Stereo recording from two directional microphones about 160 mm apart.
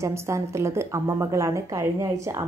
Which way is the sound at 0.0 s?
15° right (ahead or behind).